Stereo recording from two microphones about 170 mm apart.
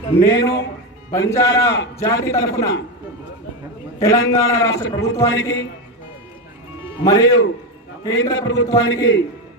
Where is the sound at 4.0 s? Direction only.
20° left (ahead or behind).